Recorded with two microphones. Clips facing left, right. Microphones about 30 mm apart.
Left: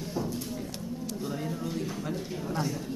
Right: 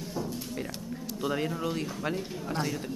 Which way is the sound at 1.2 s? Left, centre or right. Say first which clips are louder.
Right 7 dB; right.